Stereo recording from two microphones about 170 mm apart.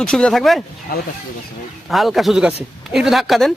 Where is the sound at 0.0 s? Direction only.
5° left (ahead or behind).